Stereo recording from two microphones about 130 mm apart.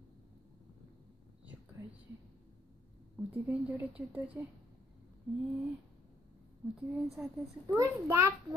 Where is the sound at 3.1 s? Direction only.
10° right (ahead or behind).